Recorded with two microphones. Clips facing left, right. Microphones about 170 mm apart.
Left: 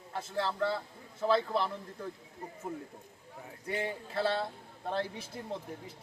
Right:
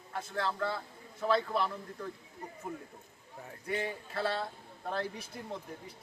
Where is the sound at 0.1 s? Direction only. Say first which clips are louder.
Left 1 dB; 25° left (ahead or behind).